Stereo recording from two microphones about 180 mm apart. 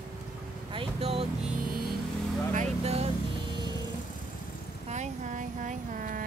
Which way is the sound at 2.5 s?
35° right (ahead or behind).